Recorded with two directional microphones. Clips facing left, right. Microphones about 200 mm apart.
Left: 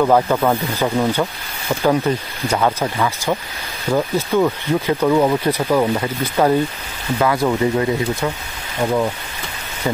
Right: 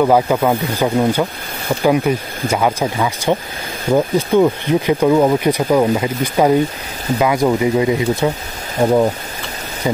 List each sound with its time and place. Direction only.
0.0 s speech: 10° right (ahead or behind)
8.8 s speech: 40° right (ahead or behind)